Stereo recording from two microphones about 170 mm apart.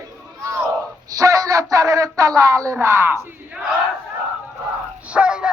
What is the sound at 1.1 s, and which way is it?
Speech, 20° right (ahead or behind).